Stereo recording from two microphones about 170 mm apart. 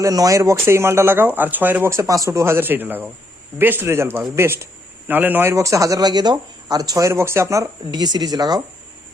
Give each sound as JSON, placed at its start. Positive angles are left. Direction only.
{"t": 0.0, "sound": "a man's voice", "side_deg": -20}